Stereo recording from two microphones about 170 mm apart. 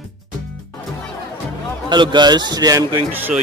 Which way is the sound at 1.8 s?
25° right (ahead or behind).